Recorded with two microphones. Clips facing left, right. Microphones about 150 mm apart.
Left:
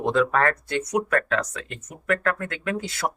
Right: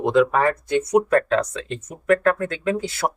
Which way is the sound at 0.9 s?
30° right (ahead or behind).